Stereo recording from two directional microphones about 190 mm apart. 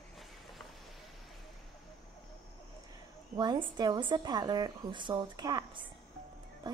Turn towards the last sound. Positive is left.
turn(degrees=-20)  # may be behind; listen again after turning